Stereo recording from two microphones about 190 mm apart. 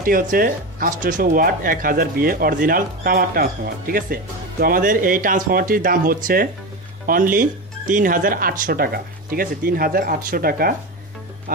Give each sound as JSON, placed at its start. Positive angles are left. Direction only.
{"t": 0.0, "sound": "speech", "side_deg": -50}